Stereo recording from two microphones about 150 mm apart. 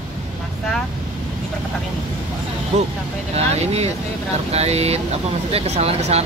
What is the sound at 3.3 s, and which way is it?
Speech, 45° right (ahead or behind).